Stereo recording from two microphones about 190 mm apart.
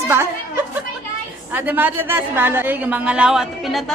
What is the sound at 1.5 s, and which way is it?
A woman's voice, 10° right (ahead or behind).